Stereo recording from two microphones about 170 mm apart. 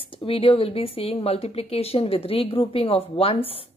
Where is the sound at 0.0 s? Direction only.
30° left (ahead or behind).